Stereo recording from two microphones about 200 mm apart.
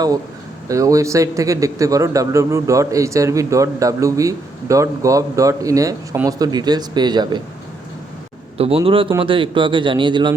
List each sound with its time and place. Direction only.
0.7 s speech: 15° right (ahead or behind)
8.5 s a man's voice: 30° right (ahead or behind)